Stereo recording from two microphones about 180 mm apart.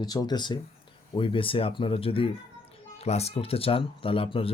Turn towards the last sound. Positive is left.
turn(degrees=30)  # may be behind; listen again after turning